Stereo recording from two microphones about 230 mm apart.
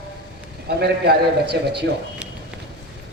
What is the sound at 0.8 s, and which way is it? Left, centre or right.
A man's voice, right.